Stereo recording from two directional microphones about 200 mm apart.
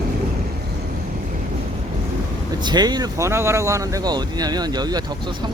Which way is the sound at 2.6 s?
20° right (ahead or behind).